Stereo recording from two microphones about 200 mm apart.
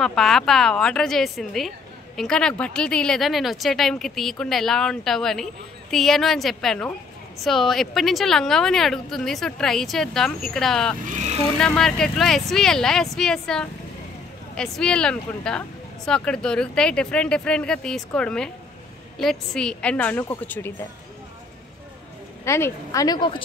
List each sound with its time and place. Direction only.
0.0 s a woman's voice: centre (ahead or behind)
22.4 s a woman's voice: 15° left (ahead or behind)